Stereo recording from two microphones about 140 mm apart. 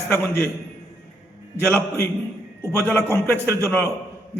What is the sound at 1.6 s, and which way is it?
A man's voice, 15° left (ahead or behind).